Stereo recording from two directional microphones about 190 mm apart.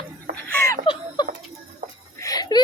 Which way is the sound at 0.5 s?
15° left (ahead or behind).